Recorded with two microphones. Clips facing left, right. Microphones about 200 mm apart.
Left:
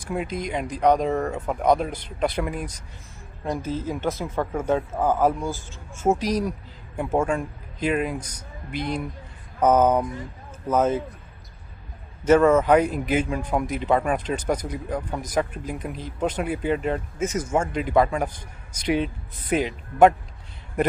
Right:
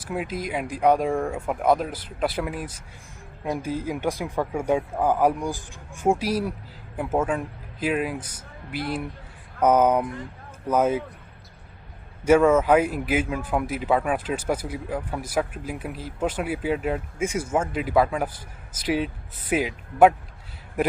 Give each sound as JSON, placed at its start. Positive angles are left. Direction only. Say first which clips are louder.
{"t": 0.0, "sound": "a man's voice", "louder": "left 1 dB", "side_deg": -5}
{"t": 12.3, "sound": "speech", "louder": "left 1 dB", "side_deg": -10}